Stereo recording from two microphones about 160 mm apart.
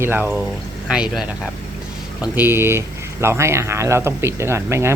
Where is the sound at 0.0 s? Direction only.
15° right (ahead or behind).